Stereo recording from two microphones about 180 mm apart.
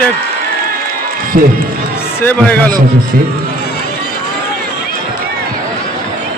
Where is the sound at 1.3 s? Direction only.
55° right (ahead or behind).